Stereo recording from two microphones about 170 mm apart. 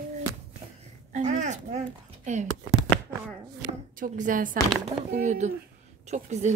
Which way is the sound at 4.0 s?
50° right (ahead or behind).